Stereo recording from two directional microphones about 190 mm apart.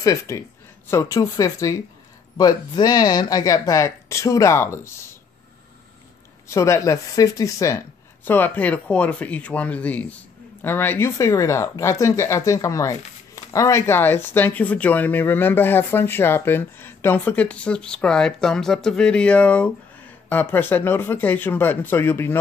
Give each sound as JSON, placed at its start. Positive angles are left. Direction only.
{"t": 0.0, "sound": "speech", "side_deg": 15}
{"t": 6.4, "sound": "speech", "side_deg": 15}